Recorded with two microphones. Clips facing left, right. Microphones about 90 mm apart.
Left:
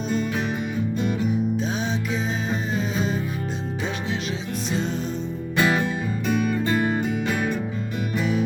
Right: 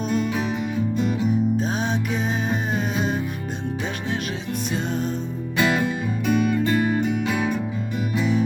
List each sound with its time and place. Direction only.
1.5 s music: 45° right (ahead or behind)
5.5 s music: centre (ahead or behind)